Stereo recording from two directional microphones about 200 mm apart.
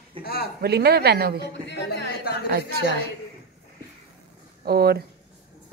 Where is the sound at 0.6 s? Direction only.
55° right (ahead or behind).